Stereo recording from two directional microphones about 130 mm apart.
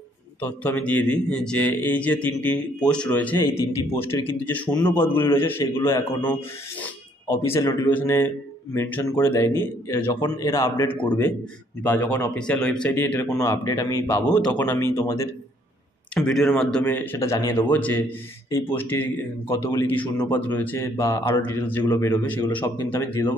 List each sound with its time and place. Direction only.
0.4 s a man's voice: 10° left (ahead or behind)
7.2 s a man's voice: 20° left (ahead or behind)
10.2 s a man's voice: 25° left (ahead or behind)
16.2 s speech: centre (ahead or behind)
16.8 s a man's voice: 15° left (ahead or behind)
21.8 s a man's voice: 25° left (ahead or behind)
22.1 s a man's voice: 10° left (ahead or behind)